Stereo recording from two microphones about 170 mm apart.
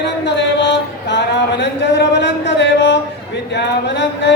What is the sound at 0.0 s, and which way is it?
Speech, 90° left.